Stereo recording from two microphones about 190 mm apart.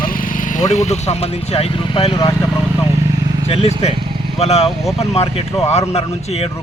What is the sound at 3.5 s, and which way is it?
A man's voice, 35° left (ahead or behind).